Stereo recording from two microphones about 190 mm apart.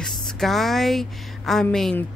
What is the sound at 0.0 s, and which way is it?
A woman's voice, centre (ahead or behind).